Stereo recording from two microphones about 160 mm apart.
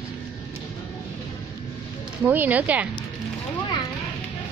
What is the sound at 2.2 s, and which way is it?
Speech, 10° right (ahead or behind).